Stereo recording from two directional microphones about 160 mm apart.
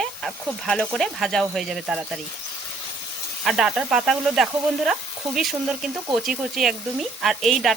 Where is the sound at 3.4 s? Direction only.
5° right (ahead or behind).